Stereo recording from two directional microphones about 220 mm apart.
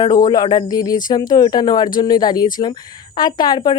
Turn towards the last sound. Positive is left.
turn(degrees=20)  # may be behind; listen again after turning